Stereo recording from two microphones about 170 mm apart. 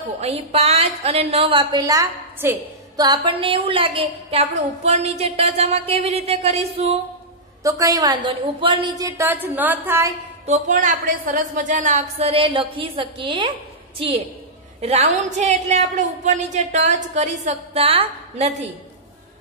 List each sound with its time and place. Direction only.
0.2 s a woman's voice: 35° right (ahead or behind)
7.6 s a woman's voice: 20° right (ahead or behind)
10.4 s a woman's voice: 45° right (ahead or behind)
14.8 s a woman's voice: 40° right (ahead or behind)